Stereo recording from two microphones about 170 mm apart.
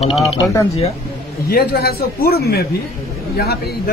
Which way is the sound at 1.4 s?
65° left (ahead or behind).